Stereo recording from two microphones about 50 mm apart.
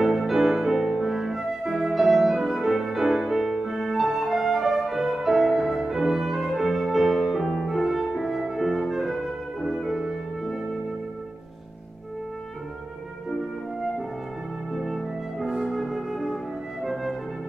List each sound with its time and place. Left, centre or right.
0.0 s music: centre
13.3 s music: centre